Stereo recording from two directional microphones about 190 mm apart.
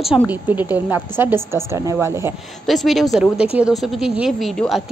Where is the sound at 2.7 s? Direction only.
Centre (ahead or behind).